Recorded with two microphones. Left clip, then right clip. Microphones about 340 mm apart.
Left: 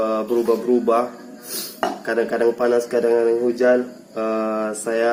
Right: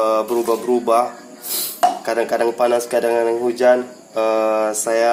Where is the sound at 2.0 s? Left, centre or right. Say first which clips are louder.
Right 1 dB; right.